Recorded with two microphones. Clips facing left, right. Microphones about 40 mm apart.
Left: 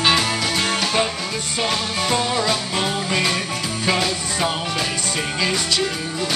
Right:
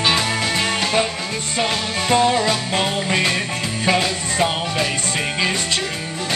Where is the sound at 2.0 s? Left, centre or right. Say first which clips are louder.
Right 5 dB; centre.